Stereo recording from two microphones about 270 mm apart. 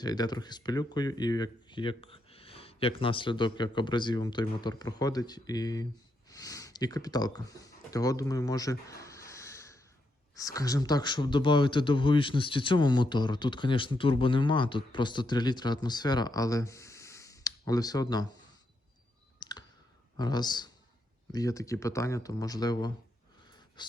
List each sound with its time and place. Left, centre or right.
0.0 s speech: centre
19.4 s clicking: centre
20.1 s speech: centre